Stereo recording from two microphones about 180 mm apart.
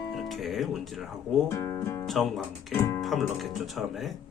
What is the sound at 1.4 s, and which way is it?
Speech, 20° left (ahead or behind).